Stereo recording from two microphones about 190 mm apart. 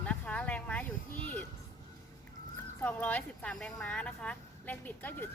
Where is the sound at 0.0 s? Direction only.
5° left (ahead or behind).